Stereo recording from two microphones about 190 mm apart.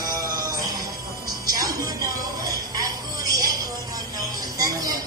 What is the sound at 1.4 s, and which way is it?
Music, 20° right (ahead or behind).